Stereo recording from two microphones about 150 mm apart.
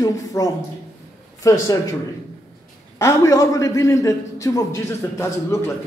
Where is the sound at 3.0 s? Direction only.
20° left (ahead or behind).